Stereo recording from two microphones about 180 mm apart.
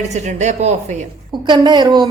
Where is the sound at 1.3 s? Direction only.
25° right (ahead or behind).